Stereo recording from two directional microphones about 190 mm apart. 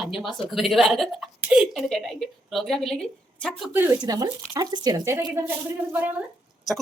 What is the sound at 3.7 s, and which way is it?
Speech, 10° right (ahead or behind).